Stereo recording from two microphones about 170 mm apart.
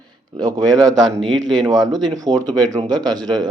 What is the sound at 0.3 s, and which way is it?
Speech, 25° right (ahead or behind).